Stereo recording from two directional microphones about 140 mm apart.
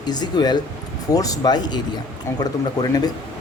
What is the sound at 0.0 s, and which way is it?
Speech, 30° left (ahead or behind).